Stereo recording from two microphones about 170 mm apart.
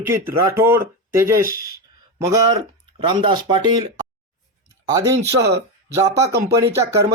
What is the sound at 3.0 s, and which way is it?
Speech, 30° right (ahead or behind).